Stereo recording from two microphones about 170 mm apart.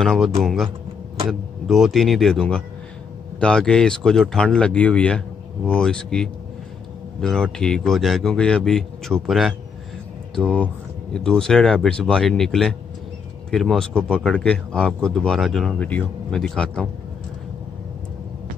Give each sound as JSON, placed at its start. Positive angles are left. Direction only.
{"t": 0.0, "sound": "a man's voice", "side_deg": 0}
{"t": 1.7, "sound": "a man's voice", "side_deg": 0}